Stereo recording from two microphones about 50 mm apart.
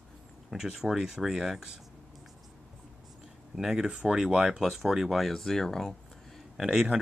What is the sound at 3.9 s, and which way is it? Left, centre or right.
Speech, centre.